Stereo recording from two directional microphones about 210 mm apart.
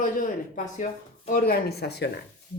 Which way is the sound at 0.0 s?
40° left (ahead or behind).